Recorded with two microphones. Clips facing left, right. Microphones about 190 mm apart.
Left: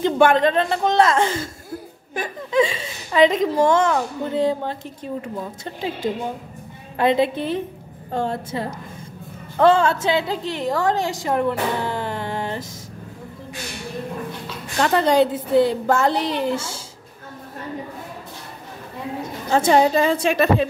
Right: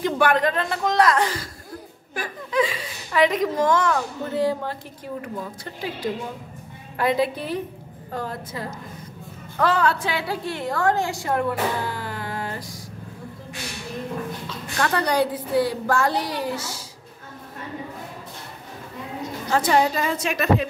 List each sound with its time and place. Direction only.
0.0 s a woman's voice: 25° left (ahead or behind)
14.8 s a woman's voice: 25° left (ahead or behind)
19.5 s a woman's voice: 25° left (ahead or behind)